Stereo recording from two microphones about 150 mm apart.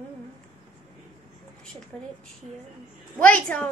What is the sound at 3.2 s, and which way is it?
Speech, 10° left (ahead or behind).